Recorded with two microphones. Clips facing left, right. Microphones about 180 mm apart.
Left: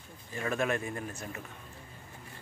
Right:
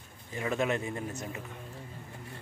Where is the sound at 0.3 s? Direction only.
20° right (ahead or behind).